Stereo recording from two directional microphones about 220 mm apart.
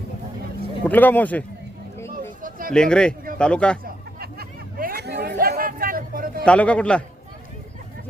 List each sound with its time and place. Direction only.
0.9 s speech: 10° left (ahead or behind)
2.4 s a sound: 40° right (ahead or behind)
2.7 s a man's voice: 5° left (ahead or behind)
3.8 s chatter: 45° right (ahead or behind)
6.4 s a man's voice: 5° left (ahead or behind)